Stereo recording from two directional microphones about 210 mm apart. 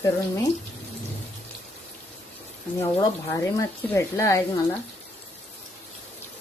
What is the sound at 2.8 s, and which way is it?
Speech, 15° left (ahead or behind).